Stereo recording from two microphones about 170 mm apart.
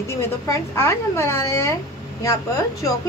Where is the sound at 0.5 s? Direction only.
15° left (ahead or behind).